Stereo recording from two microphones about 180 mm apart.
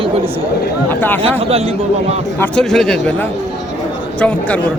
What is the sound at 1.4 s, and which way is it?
Speech, 35° right (ahead or behind).